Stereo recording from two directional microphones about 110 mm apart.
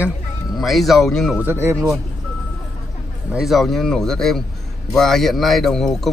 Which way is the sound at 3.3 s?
5° right (ahead or behind).